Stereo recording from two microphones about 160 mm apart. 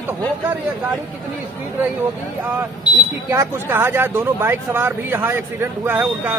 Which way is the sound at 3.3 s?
15° right (ahead or behind).